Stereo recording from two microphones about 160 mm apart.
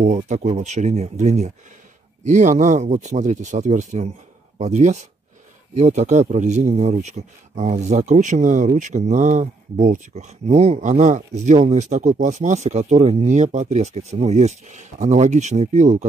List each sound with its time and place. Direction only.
0.0 s a man's voice: 45° right (ahead or behind)